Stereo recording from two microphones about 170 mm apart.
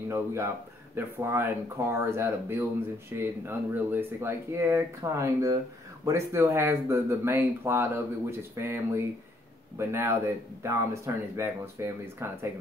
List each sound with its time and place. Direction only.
0.1 s speech: 15° right (ahead or behind)